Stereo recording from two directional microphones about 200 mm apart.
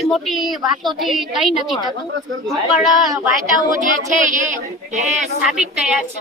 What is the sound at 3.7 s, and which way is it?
Speech, 40° right (ahead or behind).